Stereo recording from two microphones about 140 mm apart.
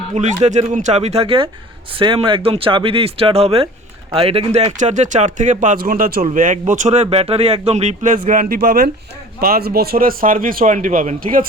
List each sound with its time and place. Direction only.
0.1 s speech: 60° right (ahead or behind); by 6.2 s 90° right
6.2 s speech: 65° right (ahead or behind)
8.3 s a man's voice: 85° right